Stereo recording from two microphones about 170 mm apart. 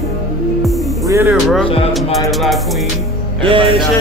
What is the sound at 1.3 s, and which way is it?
Speech, centre (ahead or behind).